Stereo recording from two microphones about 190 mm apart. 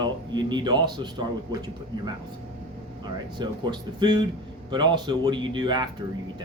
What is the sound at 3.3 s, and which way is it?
Speech, 25° right (ahead or behind).